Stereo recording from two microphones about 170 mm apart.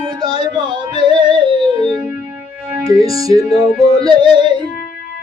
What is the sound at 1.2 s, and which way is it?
Music, 25° right (ahead or behind).